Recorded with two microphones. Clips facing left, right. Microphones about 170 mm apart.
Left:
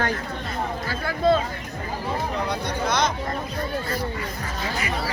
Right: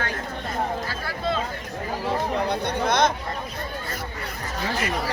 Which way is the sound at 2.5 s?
55° right (ahead or behind).